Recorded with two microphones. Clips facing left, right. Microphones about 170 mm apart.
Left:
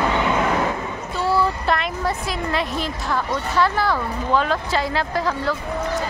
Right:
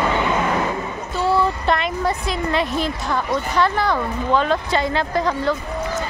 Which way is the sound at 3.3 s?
5° left (ahead or behind).